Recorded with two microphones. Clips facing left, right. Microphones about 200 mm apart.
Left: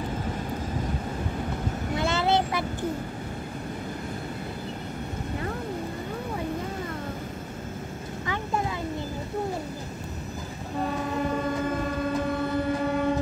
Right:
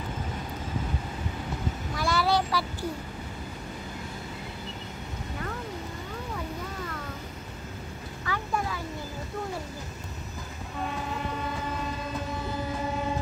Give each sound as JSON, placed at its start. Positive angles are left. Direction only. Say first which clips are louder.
{"t": 2.0, "sound": "vehicle", "louder": "left 1 dB", "side_deg": 25}
{"t": 8.3, "sound": "a sound", "louder": "left 1 dB", "side_deg": 20}
{"t": 11.6, "sound": "train", "louder": "left 6 dB", "side_deg": 50}